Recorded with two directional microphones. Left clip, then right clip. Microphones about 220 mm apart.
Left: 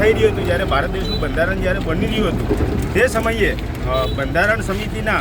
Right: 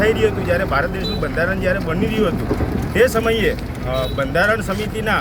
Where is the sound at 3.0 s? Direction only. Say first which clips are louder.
Right 1 dB; 20° right (ahead or behind).